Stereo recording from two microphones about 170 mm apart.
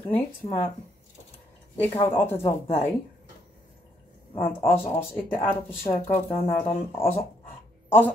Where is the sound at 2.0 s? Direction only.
15° left (ahead or behind).